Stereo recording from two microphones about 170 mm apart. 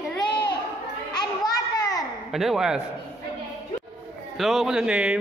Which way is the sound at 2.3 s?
Centre (ahead or behind).